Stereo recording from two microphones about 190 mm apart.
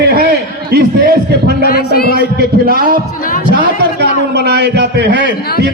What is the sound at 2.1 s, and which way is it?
Speech, 55° right (ahead or behind).